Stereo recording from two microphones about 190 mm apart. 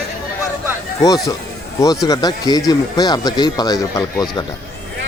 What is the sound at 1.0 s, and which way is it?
Speech, 20° left (ahead or behind).